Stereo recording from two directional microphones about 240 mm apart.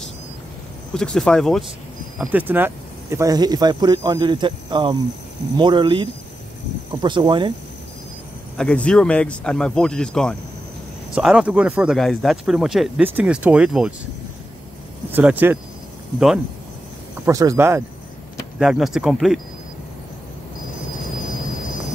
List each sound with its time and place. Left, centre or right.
0.9 s speech: centre
8.5 s speech: centre
15.0 s speech: centre
17.3 s speech: centre